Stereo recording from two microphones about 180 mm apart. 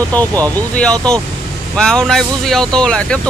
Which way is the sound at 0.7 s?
5° left (ahead or behind).